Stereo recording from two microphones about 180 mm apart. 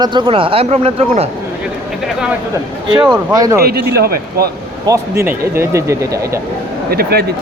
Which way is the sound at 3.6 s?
60° right (ahead or behind).